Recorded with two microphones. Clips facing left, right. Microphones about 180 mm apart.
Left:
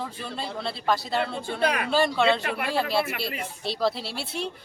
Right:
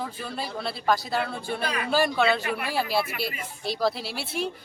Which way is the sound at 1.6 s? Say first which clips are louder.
Left 6 dB; 65° left (ahead or behind).